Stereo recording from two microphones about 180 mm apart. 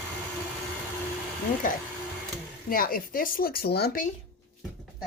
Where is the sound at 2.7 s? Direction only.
55° left (ahead or behind).